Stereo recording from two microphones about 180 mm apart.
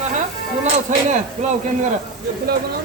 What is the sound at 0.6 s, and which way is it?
Speech, 40° right (ahead or behind).